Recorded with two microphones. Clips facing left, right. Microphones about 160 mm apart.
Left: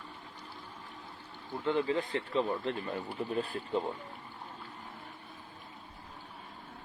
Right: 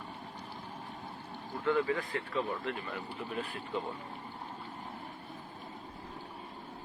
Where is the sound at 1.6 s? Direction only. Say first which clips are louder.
Even; 25° left (ahead or behind).